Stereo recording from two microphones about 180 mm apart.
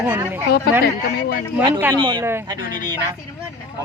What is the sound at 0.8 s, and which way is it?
Speech, 55° left (ahead or behind).